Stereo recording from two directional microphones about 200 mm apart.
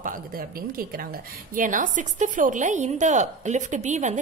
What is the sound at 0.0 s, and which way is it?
A woman's voice, 45° right (ahead or behind).